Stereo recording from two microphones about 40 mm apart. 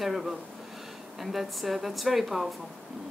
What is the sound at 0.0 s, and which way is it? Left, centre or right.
Speech, centre.